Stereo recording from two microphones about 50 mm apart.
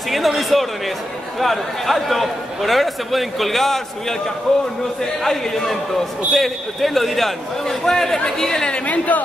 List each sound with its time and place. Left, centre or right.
0.1 s a man's voice: centre; by 9.2 s left